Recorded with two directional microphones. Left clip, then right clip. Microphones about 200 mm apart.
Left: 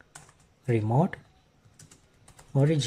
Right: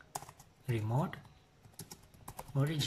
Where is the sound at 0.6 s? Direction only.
30° left (ahead or behind).